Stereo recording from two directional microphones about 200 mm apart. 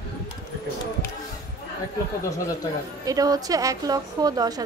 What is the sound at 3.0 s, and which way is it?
A woman's voice, 20° right (ahead or behind).